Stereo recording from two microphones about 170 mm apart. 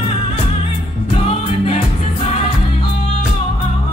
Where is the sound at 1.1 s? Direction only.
35° left (ahead or behind).